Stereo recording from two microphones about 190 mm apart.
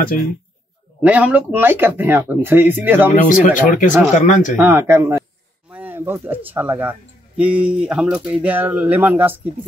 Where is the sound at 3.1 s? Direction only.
45° left (ahead or behind).